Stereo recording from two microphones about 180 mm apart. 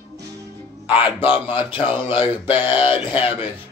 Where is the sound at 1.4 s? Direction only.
25° left (ahead or behind).